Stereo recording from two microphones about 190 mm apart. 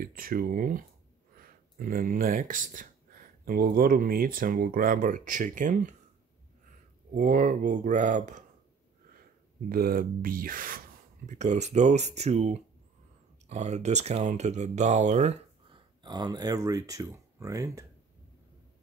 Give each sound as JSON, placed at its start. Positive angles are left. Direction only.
{"t": 0.0, "sound": "speech", "side_deg": -50}
{"t": 7.2, "sound": "speech", "side_deg": -45}
{"t": 9.7, "sound": "speech", "side_deg": -50}
{"t": 16.0, "sound": "speech", "side_deg": -20}